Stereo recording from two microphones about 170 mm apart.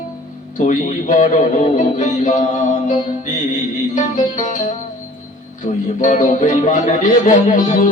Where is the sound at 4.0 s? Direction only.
45° left (ahead or behind).